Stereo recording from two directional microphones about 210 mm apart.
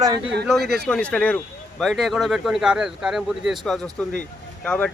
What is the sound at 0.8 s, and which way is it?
Speech, 5° left (ahead or behind).